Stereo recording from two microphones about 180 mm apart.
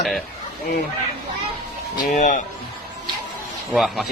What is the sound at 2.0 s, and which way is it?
Speech, 45° left (ahead or behind).